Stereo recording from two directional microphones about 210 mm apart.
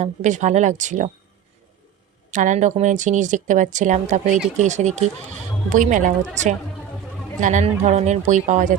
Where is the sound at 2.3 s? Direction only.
35° right (ahead or behind).